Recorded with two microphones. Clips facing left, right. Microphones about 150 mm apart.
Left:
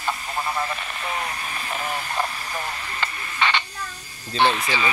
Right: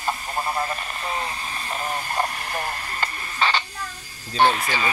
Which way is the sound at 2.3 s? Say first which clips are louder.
Right 2 dB; 45° right (ahead or behind).